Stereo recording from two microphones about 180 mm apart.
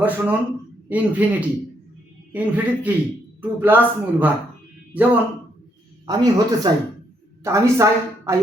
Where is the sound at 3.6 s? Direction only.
10° right (ahead or behind).